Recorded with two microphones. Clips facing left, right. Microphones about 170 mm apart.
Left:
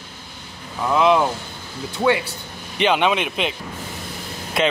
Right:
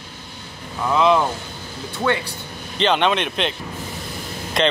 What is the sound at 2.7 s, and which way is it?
Speech, 10° left (ahead or behind).